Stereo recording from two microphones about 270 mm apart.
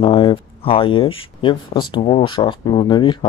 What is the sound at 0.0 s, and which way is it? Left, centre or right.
Speech, centre.